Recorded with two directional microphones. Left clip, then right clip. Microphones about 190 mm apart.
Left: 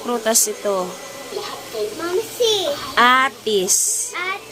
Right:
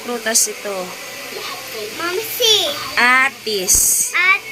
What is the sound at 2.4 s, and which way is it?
A child's voice, 25° left (ahead or behind).